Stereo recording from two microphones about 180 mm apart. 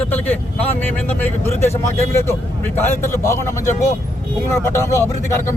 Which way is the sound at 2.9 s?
15° left (ahead or behind).